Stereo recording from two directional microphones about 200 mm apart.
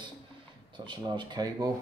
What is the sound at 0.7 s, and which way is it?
Speech, 25° right (ahead or behind).